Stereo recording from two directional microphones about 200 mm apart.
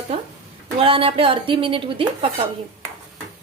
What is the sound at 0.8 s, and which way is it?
A woman's voice, 30° right (ahead or behind).